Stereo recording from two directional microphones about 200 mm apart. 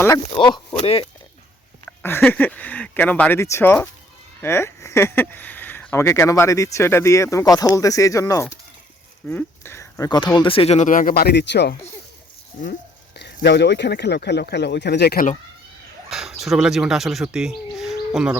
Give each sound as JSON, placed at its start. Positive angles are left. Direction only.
{"t": 0.3, "sound": "speech", "side_deg": 25}
{"t": 2.0, "sound": "speech", "side_deg": 10}
{"t": 13.4, "sound": "speech", "side_deg": 60}
{"t": 16.0, "sound": "speech", "side_deg": 0}